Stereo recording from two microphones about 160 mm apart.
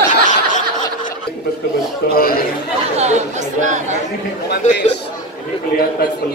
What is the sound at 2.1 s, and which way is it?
Speech, 65° left (ahead or behind).